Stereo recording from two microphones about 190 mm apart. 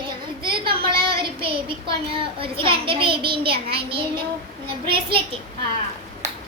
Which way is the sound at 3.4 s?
55° right (ahead or behind).